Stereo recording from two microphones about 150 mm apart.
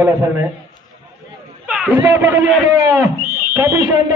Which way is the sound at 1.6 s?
10° right (ahead or behind).